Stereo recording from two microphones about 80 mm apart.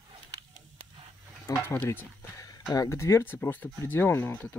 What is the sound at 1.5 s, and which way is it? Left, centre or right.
Speech, left.